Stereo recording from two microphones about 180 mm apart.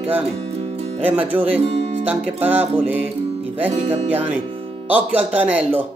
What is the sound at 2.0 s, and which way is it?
Speech, 10° right (ahead or behind).